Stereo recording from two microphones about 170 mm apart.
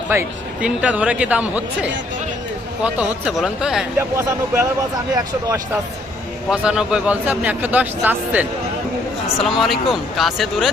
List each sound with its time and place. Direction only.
0.1 s speech: 10° right (ahead or behind)
4.1 s speech: 15° right (ahead or behind)
6.5 s speech: 5° right (ahead or behind)